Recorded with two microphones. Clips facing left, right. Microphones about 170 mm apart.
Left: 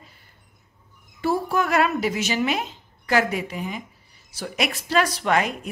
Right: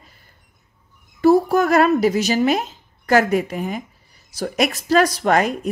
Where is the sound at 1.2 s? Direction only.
40° right (ahead or behind).